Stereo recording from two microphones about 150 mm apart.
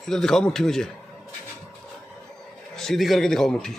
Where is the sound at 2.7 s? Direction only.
Centre (ahead or behind).